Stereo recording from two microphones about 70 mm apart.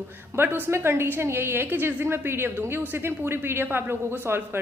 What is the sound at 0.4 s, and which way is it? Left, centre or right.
A woman's voice, right.